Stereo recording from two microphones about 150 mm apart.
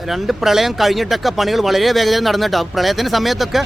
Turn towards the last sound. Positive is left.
turn(degrees=0)  # may be behind; listen again after turning